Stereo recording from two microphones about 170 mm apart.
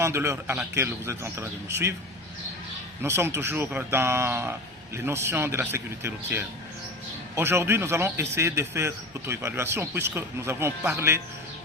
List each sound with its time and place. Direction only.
0.0 s a man's voice: 15° right (ahead or behind)
3.0 s a man's voice: 15° right (ahead or behind)